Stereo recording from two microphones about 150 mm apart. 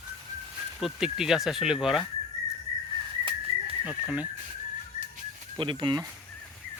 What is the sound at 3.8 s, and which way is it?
Speech, 10° right (ahead or behind).